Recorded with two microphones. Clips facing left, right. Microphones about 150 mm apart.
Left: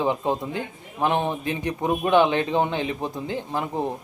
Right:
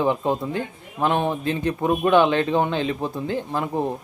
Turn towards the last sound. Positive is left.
turn(degrees=20)  # may be behind; listen again after turning